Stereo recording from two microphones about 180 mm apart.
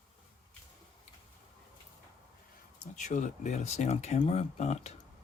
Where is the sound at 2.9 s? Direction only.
40° left (ahead or behind).